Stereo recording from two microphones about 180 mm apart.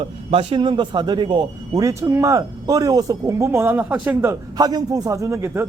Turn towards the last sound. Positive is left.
turn(degrees=-15)  # may be behind; listen again after turning